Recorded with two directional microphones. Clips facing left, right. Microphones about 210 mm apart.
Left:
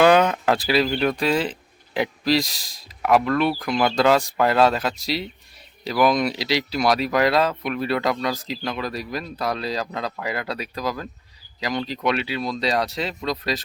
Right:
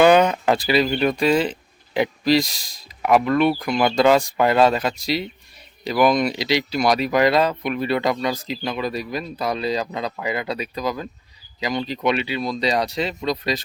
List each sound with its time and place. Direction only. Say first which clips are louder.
0.0 s speech: right 2 dB; centre (ahead or behind)